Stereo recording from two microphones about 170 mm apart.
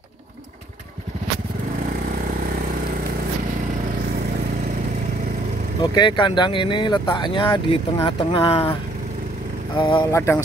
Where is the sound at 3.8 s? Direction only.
55° right (ahead or behind).